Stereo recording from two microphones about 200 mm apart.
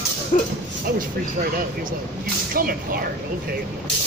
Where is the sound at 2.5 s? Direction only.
45° right (ahead or behind).